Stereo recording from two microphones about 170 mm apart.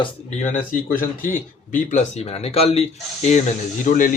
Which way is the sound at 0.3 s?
45° left (ahead or behind).